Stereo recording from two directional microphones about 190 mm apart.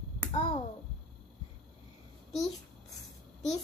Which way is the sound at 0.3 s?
25° left (ahead or behind).